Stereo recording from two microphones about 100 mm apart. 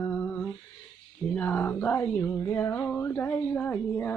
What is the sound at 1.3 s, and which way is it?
Speech, 20° left (ahead or behind).